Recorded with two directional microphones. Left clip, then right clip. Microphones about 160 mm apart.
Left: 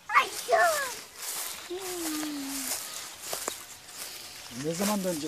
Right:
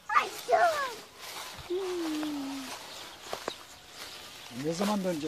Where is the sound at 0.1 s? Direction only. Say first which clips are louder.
Left 2 dB; 20° left (ahead or behind).